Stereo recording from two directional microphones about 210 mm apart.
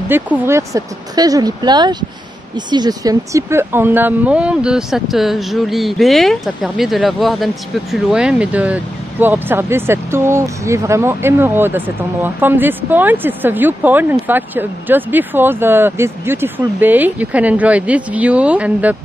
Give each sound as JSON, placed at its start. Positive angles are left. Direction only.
{"t": 0.1, "sound": "speech", "side_deg": -10}